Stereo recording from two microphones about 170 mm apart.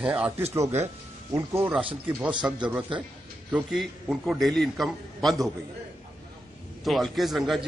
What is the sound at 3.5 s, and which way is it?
A man's voice, centre (ahead or behind).